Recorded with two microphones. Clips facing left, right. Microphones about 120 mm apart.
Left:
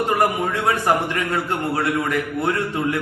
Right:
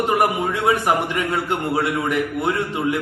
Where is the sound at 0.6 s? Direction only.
20° right (ahead or behind).